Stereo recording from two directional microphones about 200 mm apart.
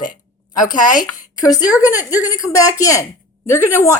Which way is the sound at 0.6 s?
40° left (ahead or behind).